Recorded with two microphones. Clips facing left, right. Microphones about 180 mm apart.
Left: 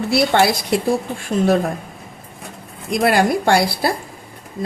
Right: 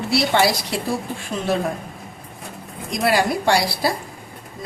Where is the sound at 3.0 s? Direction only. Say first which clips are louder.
Left 3 dB; 55° left (ahead or behind).